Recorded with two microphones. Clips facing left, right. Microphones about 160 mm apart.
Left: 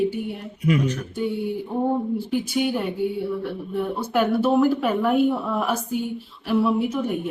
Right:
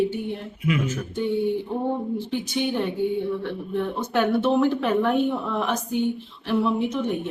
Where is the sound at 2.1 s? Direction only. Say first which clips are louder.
Left 3 dB; 10° left (ahead or behind).